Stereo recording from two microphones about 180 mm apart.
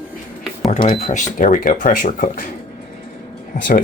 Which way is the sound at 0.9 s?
40° left (ahead or behind).